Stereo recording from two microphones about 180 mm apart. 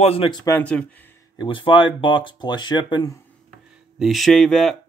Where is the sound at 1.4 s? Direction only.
30° left (ahead or behind).